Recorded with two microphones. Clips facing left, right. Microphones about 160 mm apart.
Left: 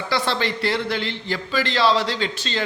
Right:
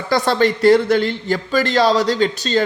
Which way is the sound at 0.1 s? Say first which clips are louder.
Right 8 dB; 45° right (ahead or behind).